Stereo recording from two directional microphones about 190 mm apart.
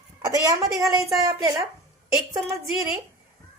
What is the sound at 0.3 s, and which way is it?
A woman's voice, 20° right (ahead or behind).